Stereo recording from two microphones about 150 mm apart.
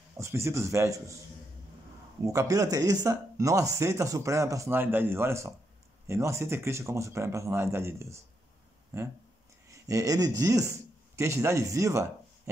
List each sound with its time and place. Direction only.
0.2 s speech: 15° right (ahead or behind)
2.2 s a man's voice: 20° right (ahead or behind)